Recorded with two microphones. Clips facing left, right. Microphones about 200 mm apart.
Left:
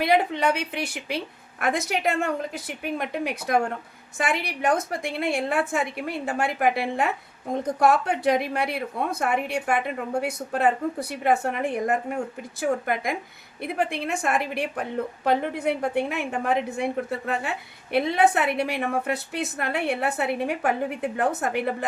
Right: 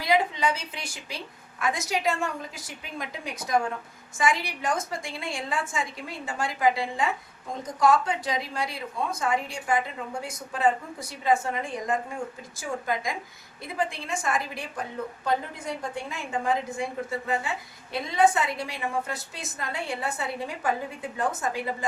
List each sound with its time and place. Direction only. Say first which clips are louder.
0.0 s a woman's voice: left 3 dB; 60° left (ahead or behind)